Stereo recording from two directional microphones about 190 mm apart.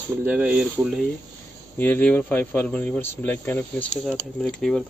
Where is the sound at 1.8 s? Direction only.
10° left (ahead or behind).